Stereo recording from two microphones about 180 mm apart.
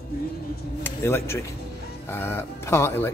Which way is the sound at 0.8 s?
15° left (ahead or behind).